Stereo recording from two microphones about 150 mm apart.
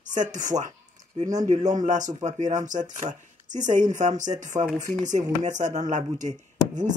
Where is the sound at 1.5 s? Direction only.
55° right (ahead or behind).